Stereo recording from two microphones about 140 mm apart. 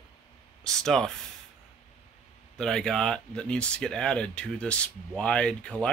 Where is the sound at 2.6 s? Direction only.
5° left (ahead or behind).